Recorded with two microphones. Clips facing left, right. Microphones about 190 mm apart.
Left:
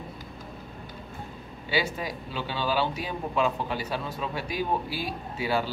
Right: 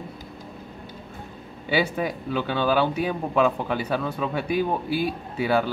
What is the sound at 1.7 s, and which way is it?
Speech, 60° right (ahead or behind).